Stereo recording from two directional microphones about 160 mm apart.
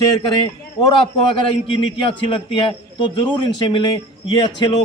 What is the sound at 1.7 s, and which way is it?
A man's voice, 35° left (ahead or behind).